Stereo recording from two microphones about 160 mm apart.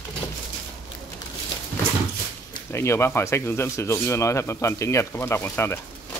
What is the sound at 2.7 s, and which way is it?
Speech, 15° left (ahead or behind).